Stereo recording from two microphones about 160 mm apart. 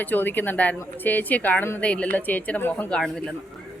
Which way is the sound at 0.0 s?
10° left (ahead or behind).